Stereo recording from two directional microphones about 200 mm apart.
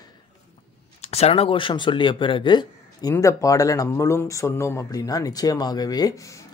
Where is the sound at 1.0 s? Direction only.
30° left (ahead or behind); by 6.4 s 15° left (ahead or behind).